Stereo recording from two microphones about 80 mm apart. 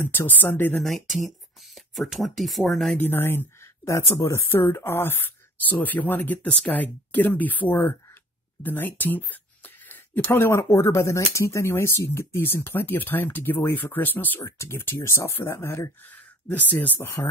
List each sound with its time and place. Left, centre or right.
0.0 s speech: left
0.8 s speech: centre
3.0 s speech: left
14.4 s speech: left
16.1 s speech: left
17.0 s speech: left